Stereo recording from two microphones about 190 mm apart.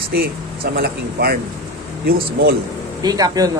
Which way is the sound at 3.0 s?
20° right (ahead or behind).